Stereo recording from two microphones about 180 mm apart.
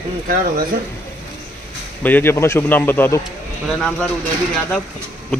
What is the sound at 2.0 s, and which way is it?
A man's voice, 10° left (ahead or behind).